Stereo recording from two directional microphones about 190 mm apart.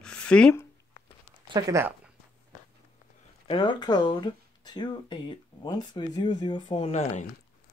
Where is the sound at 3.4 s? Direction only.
25° left (ahead or behind).